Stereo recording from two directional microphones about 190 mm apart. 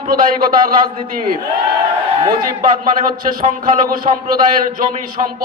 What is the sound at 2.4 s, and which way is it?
A man's voice, 45° right (ahead or behind).